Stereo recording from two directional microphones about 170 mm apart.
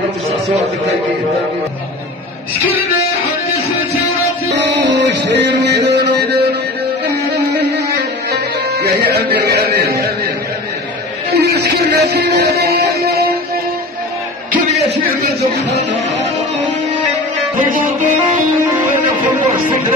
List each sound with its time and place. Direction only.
4.6 s music: 90° right
8.3 s music: 75° right (ahead or behind)
11.2 s music: 70° right (ahead or behind)